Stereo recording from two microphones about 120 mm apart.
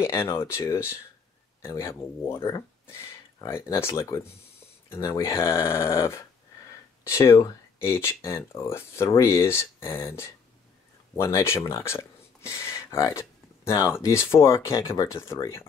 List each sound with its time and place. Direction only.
0.0 s speech: 20° left (ahead or behind)
11.1 s speech: 25° left (ahead or behind)